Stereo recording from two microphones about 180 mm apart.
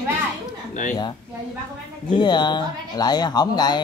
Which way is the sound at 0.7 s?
45° left (ahead or behind).